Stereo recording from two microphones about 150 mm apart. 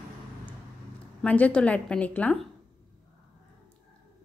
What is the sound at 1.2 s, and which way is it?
A woman's voice, 10° left (ahead or behind).